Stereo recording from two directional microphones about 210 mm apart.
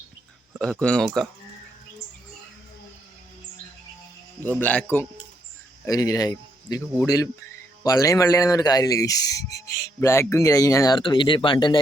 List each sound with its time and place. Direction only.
0.6 s speech: 5° left (ahead or behind)
4.4 s speech: 10° left (ahead or behind)